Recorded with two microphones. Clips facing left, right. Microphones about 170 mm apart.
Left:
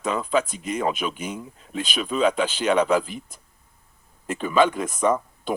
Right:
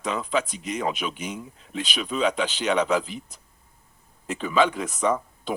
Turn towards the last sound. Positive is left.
turn(degrees=50)  # may be behind; listen again after turning